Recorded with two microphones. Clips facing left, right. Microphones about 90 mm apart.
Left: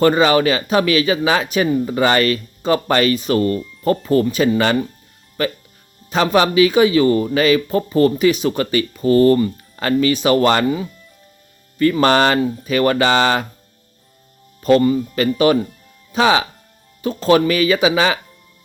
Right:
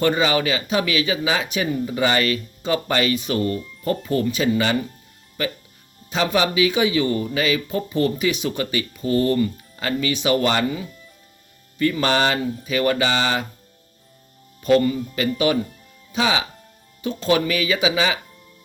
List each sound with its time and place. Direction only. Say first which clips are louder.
0.0 s speech: left 6 dB; 50° left (ahead or behind)
11.8 s speech: left 6 dB; 50° left (ahead or behind)
14.6 s speech: left 4 dB; 40° left (ahead or behind)